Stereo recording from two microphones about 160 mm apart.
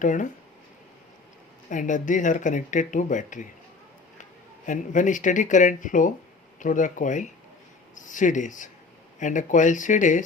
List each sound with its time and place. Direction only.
0.0 s speech: 50° left (ahead or behind)
1.7 s speech: 50° left (ahead or behind)